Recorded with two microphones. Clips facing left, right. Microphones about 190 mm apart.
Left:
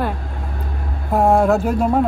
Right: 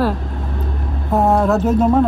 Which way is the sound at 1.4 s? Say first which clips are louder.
Even; 15° left (ahead or behind).